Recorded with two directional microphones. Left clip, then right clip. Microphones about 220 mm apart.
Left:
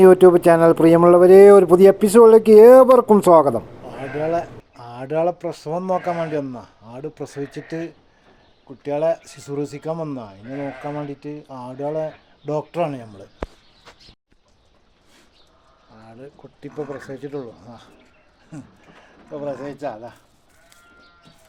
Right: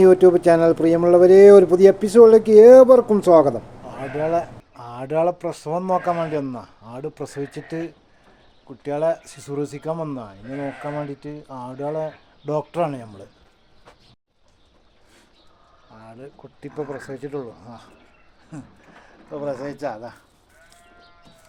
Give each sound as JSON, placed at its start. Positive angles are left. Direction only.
{"t": 0.0, "sound": "speech", "side_deg": 20}
{"t": 3.8, "sound": "speech", "side_deg": 0}
{"t": 16.0, "sound": "speech", "side_deg": -10}